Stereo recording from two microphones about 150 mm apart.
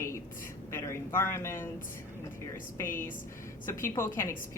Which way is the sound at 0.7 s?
15° left (ahead or behind).